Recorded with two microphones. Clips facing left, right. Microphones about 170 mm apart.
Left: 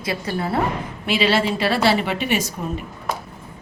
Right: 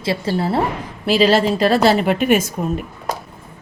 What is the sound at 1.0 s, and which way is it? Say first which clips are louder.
Speech: right 5 dB; 40° right (ahead or behind).